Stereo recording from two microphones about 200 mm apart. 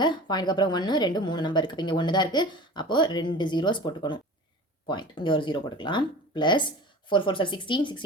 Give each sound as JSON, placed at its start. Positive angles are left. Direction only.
{"t": 0.0, "sound": "a woman's voice", "side_deg": 20}